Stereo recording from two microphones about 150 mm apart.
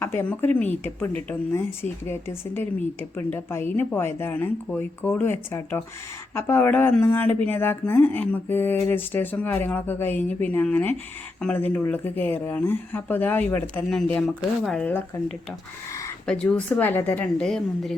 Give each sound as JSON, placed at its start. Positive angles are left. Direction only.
{"t": 0.0, "sound": "speech", "side_deg": 15}
{"t": 16.2, "sound": "speech", "side_deg": 5}